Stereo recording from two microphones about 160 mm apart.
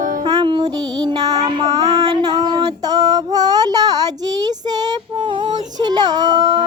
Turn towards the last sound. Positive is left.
turn(degrees=-25)  # may be behind; listen again after turning